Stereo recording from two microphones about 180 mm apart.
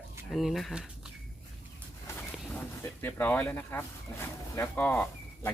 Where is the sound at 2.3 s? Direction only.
10° left (ahead or behind).